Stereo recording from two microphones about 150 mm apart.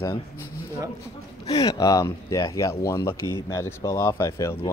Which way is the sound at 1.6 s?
25° left (ahead or behind).